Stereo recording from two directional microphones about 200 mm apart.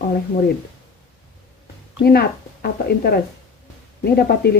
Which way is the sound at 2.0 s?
50° left (ahead or behind).